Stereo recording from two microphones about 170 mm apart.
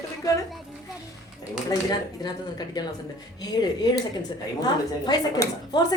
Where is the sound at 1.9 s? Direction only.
25° left (ahead or behind).